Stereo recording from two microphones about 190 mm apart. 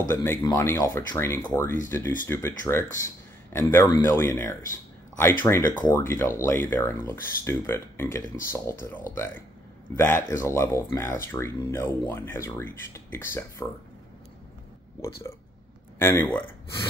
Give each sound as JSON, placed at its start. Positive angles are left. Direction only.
{"t": 0.1, "sound": "speech", "side_deg": 10}
{"t": 16.0, "sound": "speech", "side_deg": 15}